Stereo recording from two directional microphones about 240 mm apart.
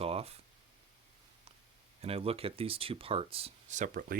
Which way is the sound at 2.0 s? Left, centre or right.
Right.